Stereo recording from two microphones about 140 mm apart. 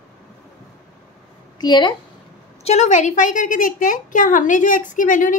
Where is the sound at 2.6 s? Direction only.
50° left (ahead or behind).